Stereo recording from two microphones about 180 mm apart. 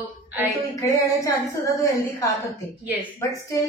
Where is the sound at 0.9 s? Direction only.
20° left (ahead or behind).